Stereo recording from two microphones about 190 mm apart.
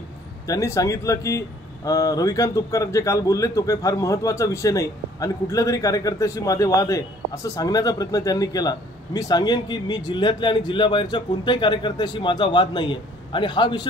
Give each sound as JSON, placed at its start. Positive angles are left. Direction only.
{"t": 0.5, "sound": "speech", "side_deg": 15}